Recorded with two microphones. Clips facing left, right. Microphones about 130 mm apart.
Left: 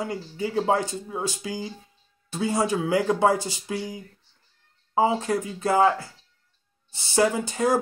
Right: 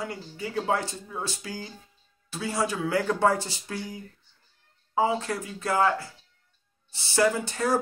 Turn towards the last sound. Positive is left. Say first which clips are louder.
# left 3 dB
turn(degrees=15)  # may be behind; listen again after turning